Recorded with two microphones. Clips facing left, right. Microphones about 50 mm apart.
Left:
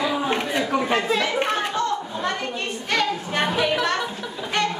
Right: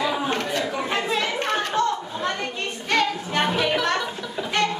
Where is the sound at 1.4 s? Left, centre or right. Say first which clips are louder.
Left 1 dB; centre.